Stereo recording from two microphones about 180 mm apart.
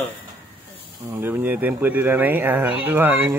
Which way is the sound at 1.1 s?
10° right (ahead or behind).